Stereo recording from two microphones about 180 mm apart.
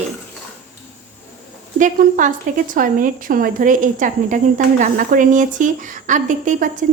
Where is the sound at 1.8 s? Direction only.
45° right (ahead or behind).